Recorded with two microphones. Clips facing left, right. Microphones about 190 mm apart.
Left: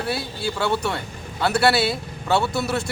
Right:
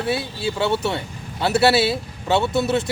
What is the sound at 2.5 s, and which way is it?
Speech, centre (ahead or behind).